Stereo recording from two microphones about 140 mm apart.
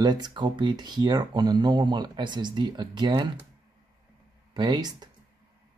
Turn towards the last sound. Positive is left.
turn(degrees=-30)  # may be behind; listen again after turning